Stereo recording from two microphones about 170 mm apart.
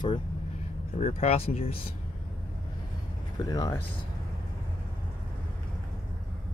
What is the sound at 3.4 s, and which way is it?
Speech, 20° left (ahead or behind).